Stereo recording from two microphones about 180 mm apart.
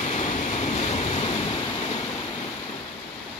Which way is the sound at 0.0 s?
40° left (ahead or behind).